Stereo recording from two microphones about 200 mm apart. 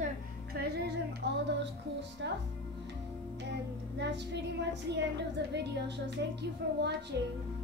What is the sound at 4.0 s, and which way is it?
A woman's voice, 60° right (ahead or behind).